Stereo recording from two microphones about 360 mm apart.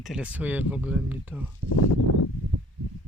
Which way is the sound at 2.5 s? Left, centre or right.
Right.